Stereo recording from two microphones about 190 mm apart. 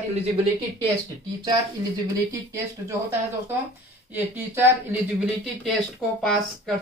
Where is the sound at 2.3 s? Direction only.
15° right (ahead or behind).